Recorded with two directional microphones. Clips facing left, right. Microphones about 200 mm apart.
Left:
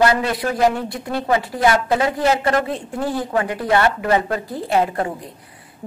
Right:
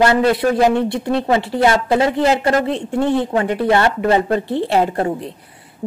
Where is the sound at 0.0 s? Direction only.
25° right (ahead or behind).